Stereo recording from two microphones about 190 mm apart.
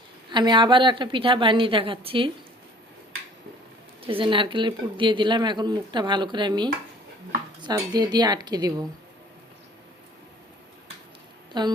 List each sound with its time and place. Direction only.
0.3 s speech: 25° right (ahead or behind)
4.0 s speech: 30° right (ahead or behind)
11.5 s speech: 25° right (ahead or behind)